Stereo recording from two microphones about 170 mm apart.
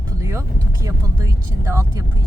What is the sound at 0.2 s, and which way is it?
Speech, 15° right (ahead or behind).